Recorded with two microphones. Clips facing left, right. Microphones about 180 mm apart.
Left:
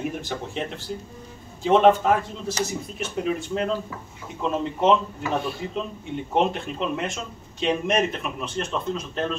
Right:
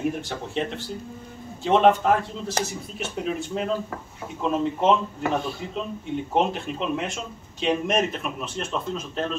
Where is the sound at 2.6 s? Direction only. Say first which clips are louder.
Even; 55° right (ahead or behind).